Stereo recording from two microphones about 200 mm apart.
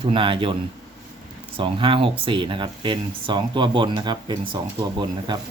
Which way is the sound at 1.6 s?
25° right (ahead or behind).